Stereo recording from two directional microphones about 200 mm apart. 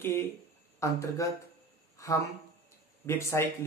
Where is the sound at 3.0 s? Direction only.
10° left (ahead or behind).